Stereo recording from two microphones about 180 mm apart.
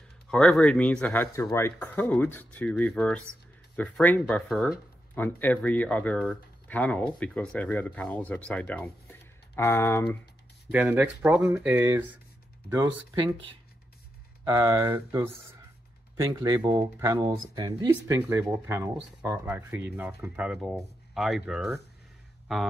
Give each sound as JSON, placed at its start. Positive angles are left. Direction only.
{"t": 0.3, "sound": "speech", "side_deg": 5}
{"t": 10.7, "sound": "speech", "side_deg": -10}
{"t": 14.4, "sound": "speech", "side_deg": -20}
{"t": 21.1, "sound": "a sound", "side_deg": 0}
{"t": 21.5, "sound": "speech", "side_deg": -5}